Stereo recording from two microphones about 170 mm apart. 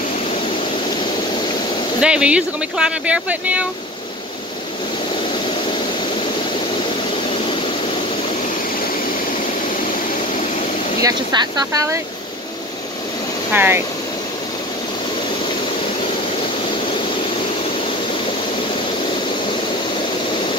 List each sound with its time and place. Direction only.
2.0 s speech: 5° right (ahead or behind)
11.0 s speech: 20° right (ahead or behind)
13.5 s speech: 10° right (ahead or behind)